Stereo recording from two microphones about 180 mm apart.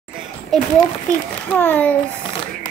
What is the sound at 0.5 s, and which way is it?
A child's voice, centre (ahead or behind).